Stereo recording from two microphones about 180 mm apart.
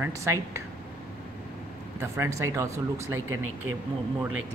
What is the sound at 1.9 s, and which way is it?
Speech, 15° right (ahead or behind).